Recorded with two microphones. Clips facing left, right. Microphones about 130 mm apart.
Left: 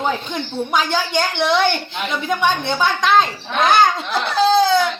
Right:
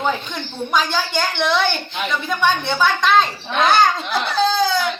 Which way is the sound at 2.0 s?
15° left (ahead or behind).